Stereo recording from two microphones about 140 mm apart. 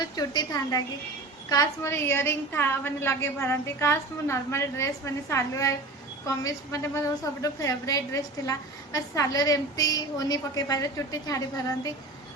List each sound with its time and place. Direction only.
0.0 s a woman's voice: 30° left (ahead or behind)